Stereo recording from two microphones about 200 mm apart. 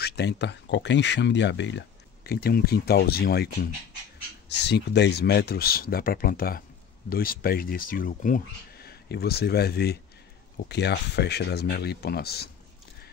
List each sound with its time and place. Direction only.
0.0 s speech: 55° left (ahead or behind)